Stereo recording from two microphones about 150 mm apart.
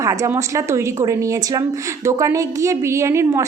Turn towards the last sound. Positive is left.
turn(degrees=-20)  # may be behind; listen again after turning